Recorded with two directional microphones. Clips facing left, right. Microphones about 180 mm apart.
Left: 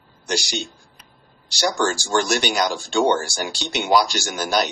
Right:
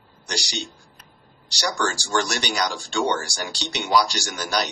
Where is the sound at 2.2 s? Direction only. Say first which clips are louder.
Left 4 dB; 45° left (ahead or behind).